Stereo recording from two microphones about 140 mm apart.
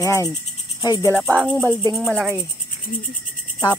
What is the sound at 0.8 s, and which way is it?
Speech, 30° left (ahead or behind).